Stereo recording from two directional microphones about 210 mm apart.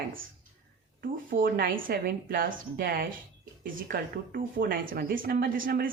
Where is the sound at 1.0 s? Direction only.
40° right (ahead or behind).